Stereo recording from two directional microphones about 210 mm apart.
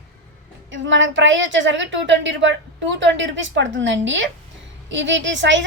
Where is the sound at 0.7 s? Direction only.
60° right (ahead or behind).